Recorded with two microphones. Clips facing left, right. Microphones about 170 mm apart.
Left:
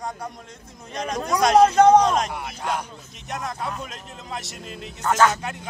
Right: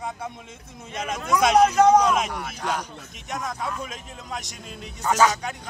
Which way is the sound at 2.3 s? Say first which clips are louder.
Left 1 dB; 5° left (ahead or behind).